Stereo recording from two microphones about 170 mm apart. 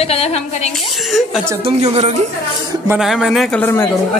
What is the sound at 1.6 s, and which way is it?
Speech, 35° right (ahead or behind).